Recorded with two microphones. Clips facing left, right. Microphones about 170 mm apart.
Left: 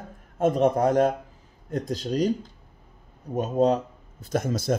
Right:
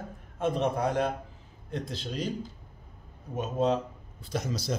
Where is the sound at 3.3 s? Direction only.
40° left (ahead or behind).